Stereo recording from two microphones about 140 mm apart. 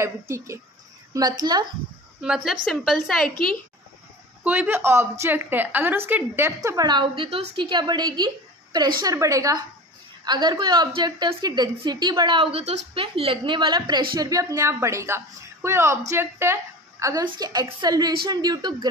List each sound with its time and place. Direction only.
0.0 s a woman's voice: 20° right (ahead or behind)
2.2 s a woman's voice: 5° right (ahead or behind)
4.5 s a woman's voice: 15° right (ahead or behind); by 18.9 s 30° right (ahead or behind)